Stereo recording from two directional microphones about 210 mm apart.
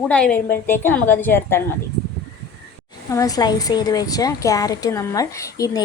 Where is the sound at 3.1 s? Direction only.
15° left (ahead or behind).